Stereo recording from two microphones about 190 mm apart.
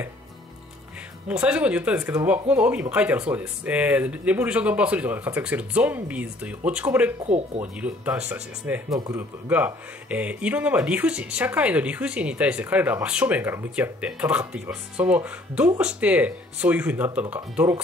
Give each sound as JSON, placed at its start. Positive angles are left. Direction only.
{"t": 1.3, "sound": "speech", "side_deg": -5}
{"t": 7.2, "sound": "speech", "side_deg": -35}
{"t": 7.6, "sound": "speech", "side_deg": -10}
{"t": 8.9, "sound": "speech", "side_deg": -20}
{"t": 9.5, "sound": "speech", "side_deg": -10}